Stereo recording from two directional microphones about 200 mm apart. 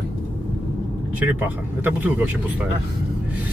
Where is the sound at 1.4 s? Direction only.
10° right (ahead or behind).